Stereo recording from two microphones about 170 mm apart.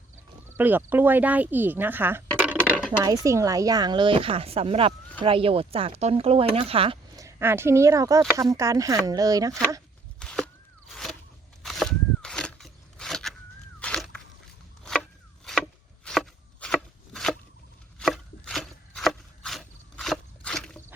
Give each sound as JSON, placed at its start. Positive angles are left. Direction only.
{"t": 0.5, "sound": "speech", "side_deg": -10}
{"t": 3.0, "sound": "speech", "side_deg": -20}
{"t": 7.2, "sound": "speech", "side_deg": -15}
{"t": 10.2, "sound": "a sound", "side_deg": 5}
{"t": 11.6, "sound": "a sound", "side_deg": 0}
{"t": 16.0, "sound": "chopping", "side_deg": 5}